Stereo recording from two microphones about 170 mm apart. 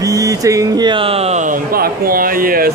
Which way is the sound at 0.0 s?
20° right (ahead or behind).